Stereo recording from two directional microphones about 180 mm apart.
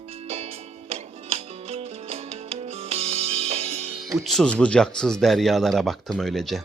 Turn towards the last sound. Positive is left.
turn(degrees=0)  # may be behind; listen again after turning